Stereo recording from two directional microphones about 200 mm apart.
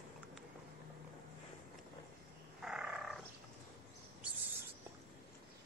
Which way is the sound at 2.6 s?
5° right (ahead or behind).